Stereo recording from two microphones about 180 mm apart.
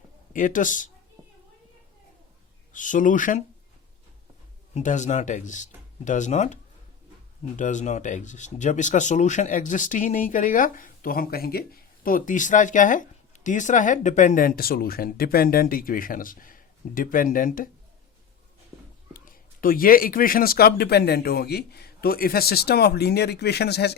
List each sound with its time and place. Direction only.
0.3 s speech: 45° left (ahead or behind)
2.7 s speech: 45° left (ahead or behind)
4.7 s speech: 40° left (ahead or behind)
19.1 s speech: 50° left (ahead or behind)